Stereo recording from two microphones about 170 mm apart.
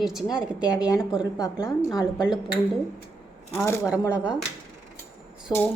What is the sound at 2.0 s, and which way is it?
Speech, 5° right (ahead or behind).